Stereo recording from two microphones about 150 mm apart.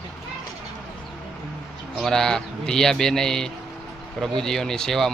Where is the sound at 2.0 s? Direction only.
5° left (ahead or behind).